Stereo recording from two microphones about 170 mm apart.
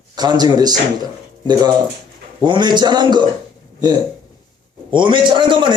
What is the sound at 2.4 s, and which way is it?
Speech, 25° right (ahead or behind).